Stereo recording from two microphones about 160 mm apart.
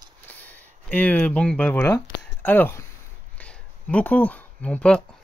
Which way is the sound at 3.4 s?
5° left (ahead or behind).